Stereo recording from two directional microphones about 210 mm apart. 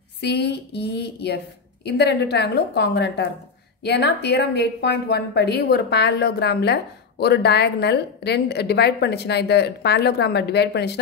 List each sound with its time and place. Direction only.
0.2 s a woman's voice: 55° left (ahead or behind)